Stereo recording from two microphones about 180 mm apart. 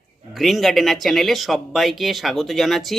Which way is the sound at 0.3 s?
Centre (ahead or behind).